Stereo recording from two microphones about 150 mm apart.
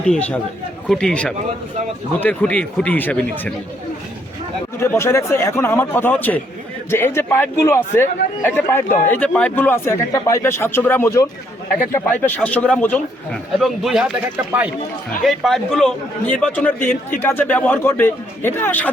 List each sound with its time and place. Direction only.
0.1 s a man's voice: 10° left (ahead or behind)
4.8 s a man's voice: 15° left (ahead or behind); by 14.7 s 10° right (ahead or behind)
15.2 s a man's voice: centre (ahead or behind)